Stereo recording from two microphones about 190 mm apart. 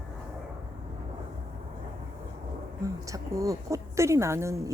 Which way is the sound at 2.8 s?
15° right (ahead or behind).